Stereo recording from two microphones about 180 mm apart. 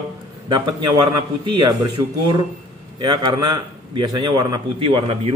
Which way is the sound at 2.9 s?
20° right (ahead or behind).